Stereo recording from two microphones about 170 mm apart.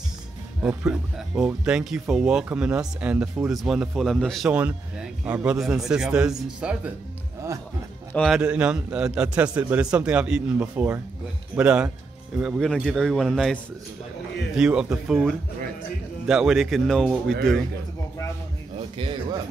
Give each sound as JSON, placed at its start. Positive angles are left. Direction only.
{"t": 0.6, "sound": "speech", "side_deg": -5}
{"t": 8.1, "sound": "a man's voice", "side_deg": 5}
{"t": 8.4, "sound": "a man's voice", "side_deg": -5}
{"t": 18.8, "sound": "speech", "side_deg": -35}